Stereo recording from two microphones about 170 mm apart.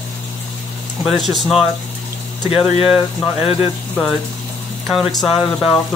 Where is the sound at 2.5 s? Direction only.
35° left (ahead or behind).